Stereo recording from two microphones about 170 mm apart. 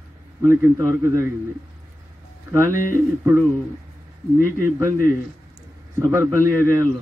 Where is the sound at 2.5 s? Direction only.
15° right (ahead or behind).